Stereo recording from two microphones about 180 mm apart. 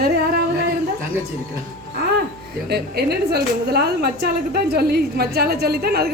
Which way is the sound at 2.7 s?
65° right (ahead or behind).